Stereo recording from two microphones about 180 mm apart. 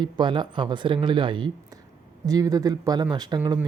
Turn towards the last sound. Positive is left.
turn(degrees=-20)  # may be behind; listen again after turning